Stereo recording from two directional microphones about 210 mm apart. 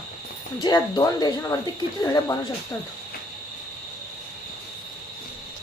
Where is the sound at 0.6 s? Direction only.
20° left (ahead or behind).